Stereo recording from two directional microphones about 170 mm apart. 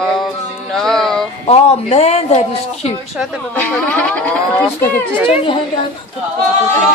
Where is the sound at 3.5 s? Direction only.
10° left (ahead or behind).